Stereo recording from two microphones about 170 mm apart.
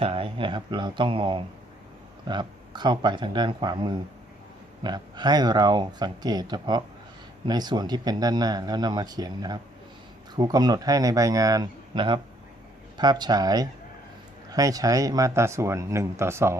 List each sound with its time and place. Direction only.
0.0 s speech: 35° right (ahead or behind); by 16.6 s 15° right (ahead or behind)